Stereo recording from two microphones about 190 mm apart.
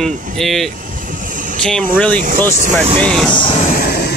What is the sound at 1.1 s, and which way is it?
Vehicle, 45° right (ahead or behind).